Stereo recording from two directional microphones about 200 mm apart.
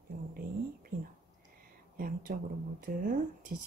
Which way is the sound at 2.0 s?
45° right (ahead or behind).